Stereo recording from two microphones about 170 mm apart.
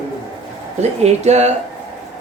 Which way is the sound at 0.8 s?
40° right (ahead or behind).